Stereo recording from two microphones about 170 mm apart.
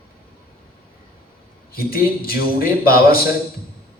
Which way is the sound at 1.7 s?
60° left (ahead or behind).